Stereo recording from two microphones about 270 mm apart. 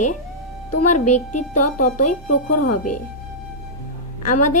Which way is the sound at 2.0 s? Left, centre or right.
Left.